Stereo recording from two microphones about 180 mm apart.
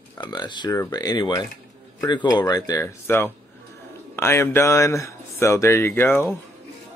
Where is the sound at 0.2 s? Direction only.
25° left (ahead or behind).